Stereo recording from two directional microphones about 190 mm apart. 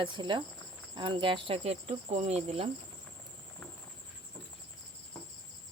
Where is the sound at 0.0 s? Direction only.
25° right (ahead or behind).